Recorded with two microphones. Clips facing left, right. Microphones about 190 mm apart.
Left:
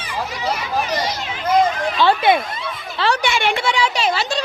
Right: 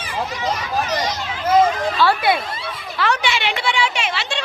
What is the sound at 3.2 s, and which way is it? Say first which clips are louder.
A woman's voice: left 3 dB; 50° left (ahead or behind).